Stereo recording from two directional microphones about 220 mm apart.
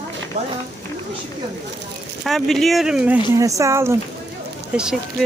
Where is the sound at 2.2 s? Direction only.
Centre (ahead or behind).